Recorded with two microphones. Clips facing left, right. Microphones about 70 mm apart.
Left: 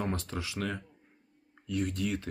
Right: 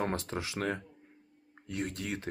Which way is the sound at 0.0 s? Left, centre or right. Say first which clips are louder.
Right 1 dB; right.